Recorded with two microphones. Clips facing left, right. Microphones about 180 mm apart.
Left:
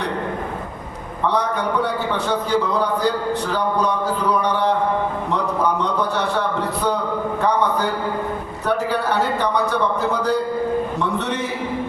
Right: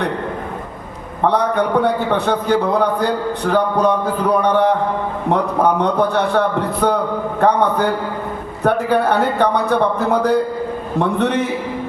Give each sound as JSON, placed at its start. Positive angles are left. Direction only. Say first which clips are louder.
{"t": 1.2, "sound": "a man's voice", "louder": "right 5 dB", "side_deg": -55}
{"t": 8.6, "sound": "a man's voice", "louder": "right 6 dB", "side_deg": -55}